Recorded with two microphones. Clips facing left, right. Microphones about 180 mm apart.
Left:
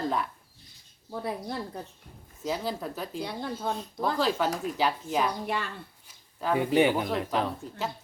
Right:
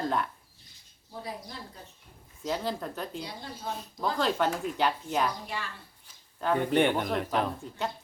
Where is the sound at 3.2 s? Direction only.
55° left (ahead or behind).